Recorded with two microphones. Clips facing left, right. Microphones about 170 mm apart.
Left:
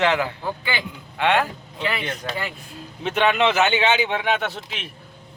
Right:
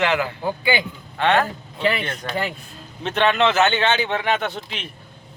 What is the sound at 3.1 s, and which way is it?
A man's voice, 10° left (ahead or behind).